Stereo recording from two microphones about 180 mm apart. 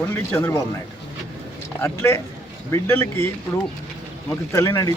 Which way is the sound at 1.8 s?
15° left (ahead or behind).